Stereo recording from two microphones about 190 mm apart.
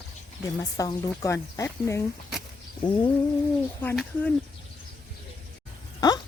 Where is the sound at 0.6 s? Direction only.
20° left (ahead or behind).